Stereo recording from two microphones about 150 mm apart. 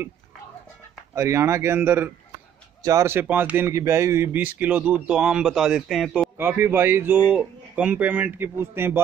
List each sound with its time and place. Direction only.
1.1 s speech: 20° right (ahead or behind); by 6.3 s centre (ahead or behind)
6.3 s speech: 15° right (ahead or behind)